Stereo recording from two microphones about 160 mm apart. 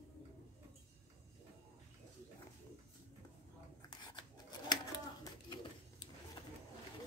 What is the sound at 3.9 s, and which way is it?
Scissors, 25° left (ahead or behind).